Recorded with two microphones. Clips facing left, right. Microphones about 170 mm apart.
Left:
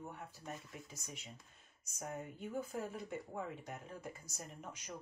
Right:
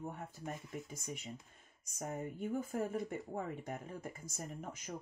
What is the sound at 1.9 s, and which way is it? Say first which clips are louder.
Speech: right 4 dB; 45° right (ahead or behind).